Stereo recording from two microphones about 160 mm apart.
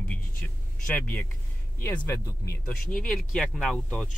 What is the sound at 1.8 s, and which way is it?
Speech, 20° left (ahead or behind).